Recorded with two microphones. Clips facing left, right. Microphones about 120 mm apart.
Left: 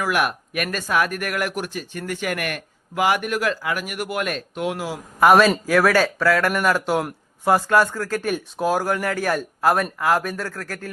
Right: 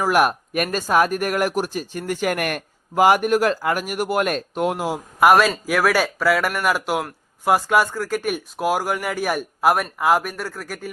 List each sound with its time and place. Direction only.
0.0 s speech: 40° right (ahead or behind)
5.2 s a man's voice: 5° right (ahead or behind)